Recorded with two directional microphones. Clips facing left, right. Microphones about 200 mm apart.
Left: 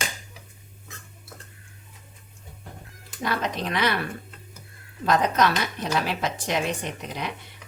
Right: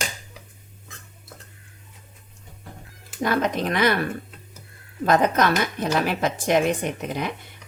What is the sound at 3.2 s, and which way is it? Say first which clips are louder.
Speech: right 5 dB; 50° right (ahead or behind).